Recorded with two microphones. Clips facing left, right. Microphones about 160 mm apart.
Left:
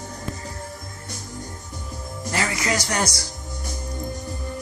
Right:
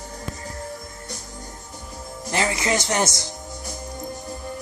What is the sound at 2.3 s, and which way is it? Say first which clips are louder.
Speech: right 2 dB; 20° right (ahead or behind).